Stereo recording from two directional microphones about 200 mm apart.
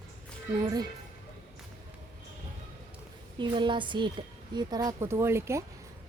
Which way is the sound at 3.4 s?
25° right (ahead or behind).